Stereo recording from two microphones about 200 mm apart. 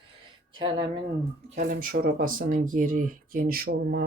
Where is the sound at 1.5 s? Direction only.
45° right (ahead or behind).